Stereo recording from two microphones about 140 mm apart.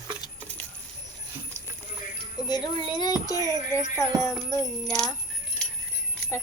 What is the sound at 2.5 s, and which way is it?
Speech, 30° left (ahead or behind).